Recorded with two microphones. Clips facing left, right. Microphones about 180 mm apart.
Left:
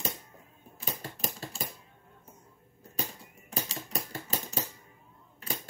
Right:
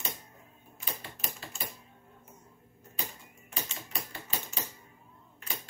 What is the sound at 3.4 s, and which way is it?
Typewriter, 40° left (ahead or behind).